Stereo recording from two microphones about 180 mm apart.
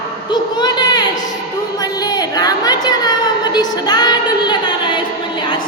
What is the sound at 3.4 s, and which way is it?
Singing, 25° left (ahead or behind).